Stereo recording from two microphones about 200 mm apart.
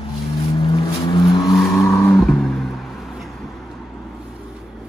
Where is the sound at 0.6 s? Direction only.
25° left (ahead or behind).